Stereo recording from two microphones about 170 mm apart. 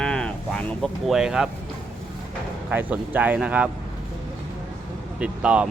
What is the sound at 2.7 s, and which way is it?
Speech, 10° right (ahead or behind).